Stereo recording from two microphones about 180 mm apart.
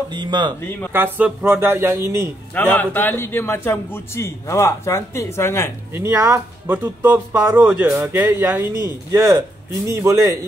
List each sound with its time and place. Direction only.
0.1 s speech: 25° right (ahead or behind)
0.6 s a man's voice: 10° left (ahead or behind)
0.9 s speech: 10° right (ahead or behind)
2.5 s a man's voice: 10° left (ahead or behind)
5.9 s speech: 15° right (ahead or behind)